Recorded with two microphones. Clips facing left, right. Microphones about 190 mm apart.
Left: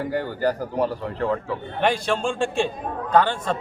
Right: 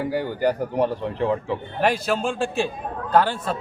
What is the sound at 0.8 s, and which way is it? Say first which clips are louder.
Speech: right 2 dB; 25° right (ahead or behind).